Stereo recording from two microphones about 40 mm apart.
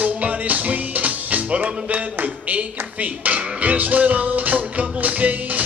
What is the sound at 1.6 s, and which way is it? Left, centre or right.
Speech, right.